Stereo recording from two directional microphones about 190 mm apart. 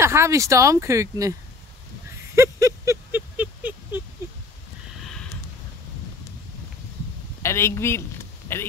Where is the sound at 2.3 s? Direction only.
15° right (ahead or behind).